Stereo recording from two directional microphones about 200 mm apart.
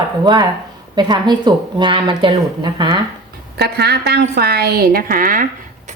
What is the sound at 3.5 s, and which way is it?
A woman's voice, 55° right (ahead or behind).